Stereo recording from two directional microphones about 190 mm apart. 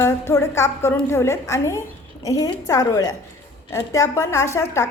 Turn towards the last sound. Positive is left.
turn(degrees=15)  # may be behind; listen again after turning